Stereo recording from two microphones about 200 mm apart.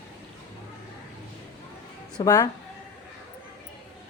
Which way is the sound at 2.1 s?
15° left (ahead or behind).